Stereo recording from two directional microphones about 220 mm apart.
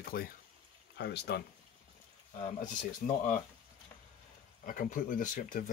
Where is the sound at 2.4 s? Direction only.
35° left (ahead or behind).